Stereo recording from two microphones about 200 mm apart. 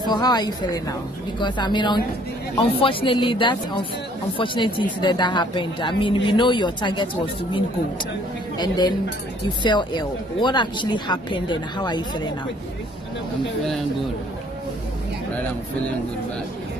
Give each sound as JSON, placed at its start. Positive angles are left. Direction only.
{"t": 0.0, "sound": "speech", "side_deg": 20}
{"t": 8.5, "sound": "speech", "side_deg": 20}